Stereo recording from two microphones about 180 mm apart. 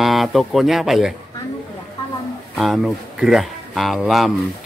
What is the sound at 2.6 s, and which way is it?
Speech, centre (ahead or behind).